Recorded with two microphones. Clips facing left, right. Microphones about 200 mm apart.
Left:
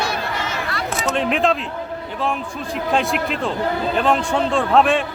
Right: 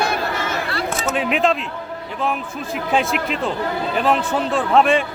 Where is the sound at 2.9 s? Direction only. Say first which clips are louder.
Right 1 dB; centre (ahead or behind).